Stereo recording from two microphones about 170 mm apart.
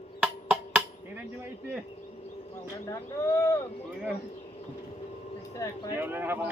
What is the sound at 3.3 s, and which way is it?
Speech, 15° left (ahead or behind).